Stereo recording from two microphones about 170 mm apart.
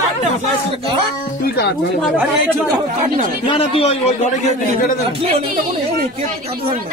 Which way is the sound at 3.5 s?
35° left (ahead or behind).